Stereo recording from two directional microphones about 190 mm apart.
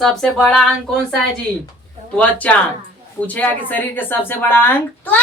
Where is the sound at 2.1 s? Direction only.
5° left (ahead or behind).